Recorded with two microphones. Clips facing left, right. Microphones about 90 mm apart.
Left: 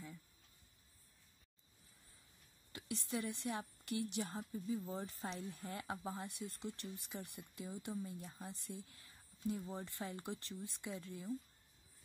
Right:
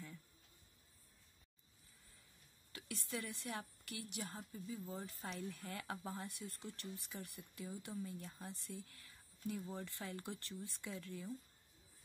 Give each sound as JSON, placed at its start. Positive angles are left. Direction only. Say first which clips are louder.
{"t": 2.7, "sound": "a woman's voice", "louder": "left 4 dB", "side_deg": 25}